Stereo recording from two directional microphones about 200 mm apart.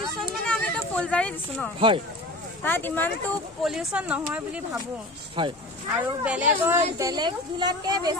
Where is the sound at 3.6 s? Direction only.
5° right (ahead or behind).